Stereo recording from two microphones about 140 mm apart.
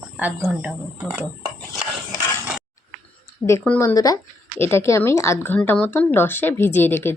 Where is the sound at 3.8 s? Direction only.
25° left (ahead or behind).